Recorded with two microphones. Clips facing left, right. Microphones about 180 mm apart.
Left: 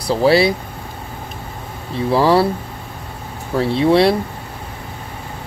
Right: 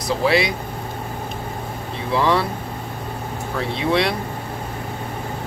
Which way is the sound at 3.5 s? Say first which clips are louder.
Left 7 dB; 35° left (ahead or behind).